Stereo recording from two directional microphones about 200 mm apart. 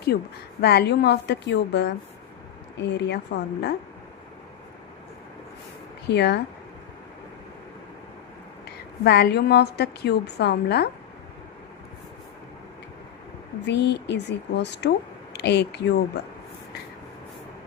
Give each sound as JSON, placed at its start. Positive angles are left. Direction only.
{"t": 0.1, "sound": "a woman's voice", "side_deg": 50}
{"t": 6.1, "sound": "speech", "side_deg": 55}
{"t": 9.0, "sound": "speech", "side_deg": 55}
{"t": 13.7, "sound": "speech", "side_deg": 60}